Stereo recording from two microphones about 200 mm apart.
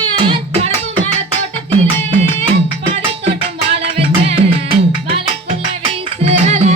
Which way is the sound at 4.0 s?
30° right (ahead or behind).